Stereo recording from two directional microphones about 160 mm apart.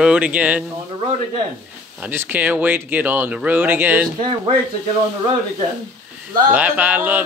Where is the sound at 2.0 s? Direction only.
10° right (ahead or behind).